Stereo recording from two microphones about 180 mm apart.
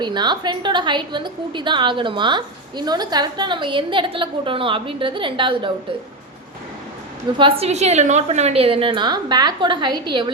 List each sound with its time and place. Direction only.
0.0 s a woman's voice: 25° right (ahead or behind)
7.3 s a woman's voice: 30° right (ahead or behind)